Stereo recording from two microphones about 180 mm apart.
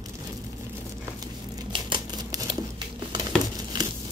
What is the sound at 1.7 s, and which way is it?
Scissors, 25° right (ahead or behind).